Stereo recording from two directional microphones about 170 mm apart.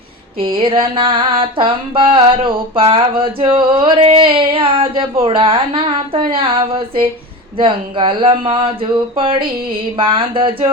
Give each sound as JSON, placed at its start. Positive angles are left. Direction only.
{"t": 0.3, "sound": "mantra", "side_deg": -30}